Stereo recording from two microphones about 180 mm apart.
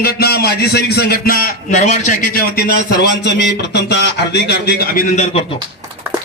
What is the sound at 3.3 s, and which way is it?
Speech, 70° left (ahead or behind).